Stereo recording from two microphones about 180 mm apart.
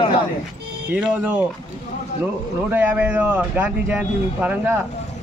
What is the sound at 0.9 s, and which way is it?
A man's voice, 10° right (ahead or behind).